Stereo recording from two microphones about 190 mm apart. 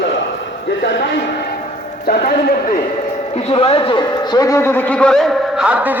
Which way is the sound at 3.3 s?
30° left (ahead or behind).